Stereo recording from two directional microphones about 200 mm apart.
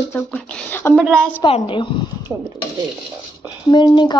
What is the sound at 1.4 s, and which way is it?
Speech, 25° left (ahead or behind).